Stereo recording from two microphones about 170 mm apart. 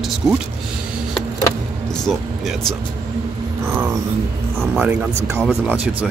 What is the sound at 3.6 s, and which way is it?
Speech, 15° right (ahead or behind).